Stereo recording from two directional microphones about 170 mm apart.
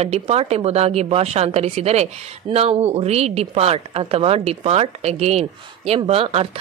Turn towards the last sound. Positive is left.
turn(degrees=-35)  # may be behind; listen again after turning